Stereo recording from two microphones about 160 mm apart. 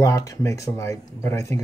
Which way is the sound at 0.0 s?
20° left (ahead or behind).